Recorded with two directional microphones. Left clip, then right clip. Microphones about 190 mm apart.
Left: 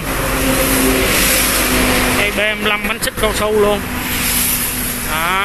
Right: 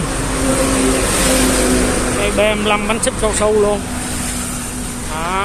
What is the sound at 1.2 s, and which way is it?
Vehicle, 65° right (ahead or behind).